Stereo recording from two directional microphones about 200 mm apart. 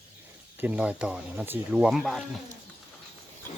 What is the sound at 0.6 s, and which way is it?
Speech, 5° right (ahead or behind).